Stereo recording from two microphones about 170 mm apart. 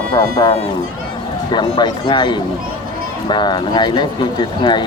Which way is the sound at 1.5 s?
25° left (ahead or behind).